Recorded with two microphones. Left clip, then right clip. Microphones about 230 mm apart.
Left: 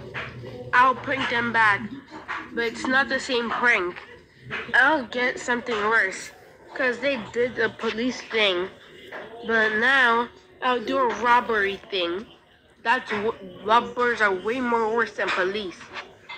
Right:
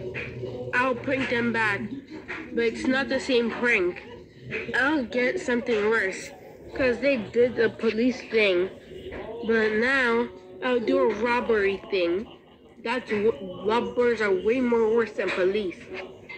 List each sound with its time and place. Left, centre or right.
0.7 s a man's voice: centre
1.0 s a woman's voice: left
2.2 s a sound: left
2.7 s a woman's voice: left
3.4 s speech: centre
4.9 s a woman's voice: left
14.4 s speech: centre
15.0 s a woman's voice: left